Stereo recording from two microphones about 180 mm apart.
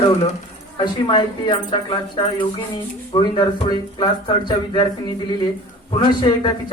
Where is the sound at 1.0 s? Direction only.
30° left (ahead or behind).